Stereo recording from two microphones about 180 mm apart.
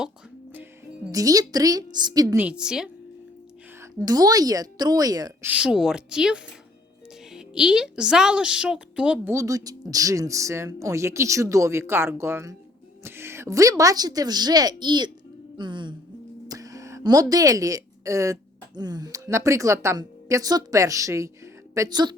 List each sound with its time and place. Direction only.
1.1 s a woman's voice: 20° right (ahead or behind)
2.2 s a woman's voice: 10° right (ahead or behind)
3.8 s a woman's voice: 20° right (ahead or behind)
5.5 s a woman's voice: 5° right (ahead or behind)
9.3 s a woman's voice: 20° right (ahead or behind)
15.5 s music: 25° right (ahead or behind)
16.5 s a sound: 20° right (ahead or behind)
18.8 s a woman's voice: 20° right (ahead or behind)